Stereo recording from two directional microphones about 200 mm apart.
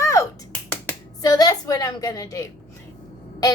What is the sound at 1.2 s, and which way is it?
A woman's voice, 20° left (ahead or behind).